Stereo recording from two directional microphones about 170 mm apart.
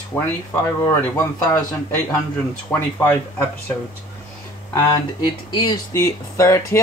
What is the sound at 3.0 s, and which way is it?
Speech, 15° left (ahead or behind).